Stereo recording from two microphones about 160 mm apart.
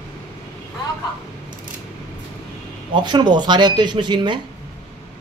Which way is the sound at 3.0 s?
30° right (ahead or behind).